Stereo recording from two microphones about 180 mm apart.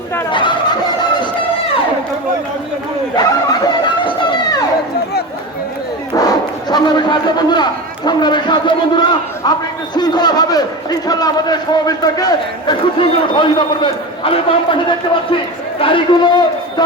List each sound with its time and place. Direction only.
0.3 s turkey: 25° left (ahead or behind)
3.2 s chatter: 25° left (ahead or behind)
6.1 s a man's voice: 20° left (ahead or behind)